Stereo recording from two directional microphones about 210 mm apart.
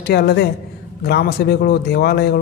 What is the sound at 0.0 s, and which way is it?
Speech, 50° left (ahead or behind).